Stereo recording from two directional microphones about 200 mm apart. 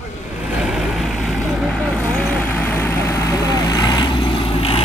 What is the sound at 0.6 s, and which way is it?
Vehicle, centre (ahead or behind).